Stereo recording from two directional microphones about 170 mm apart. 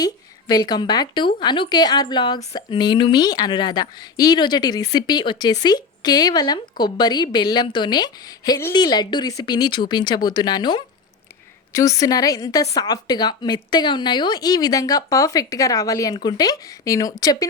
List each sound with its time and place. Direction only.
0.0 s a woman's voice: 25° left (ahead or behind)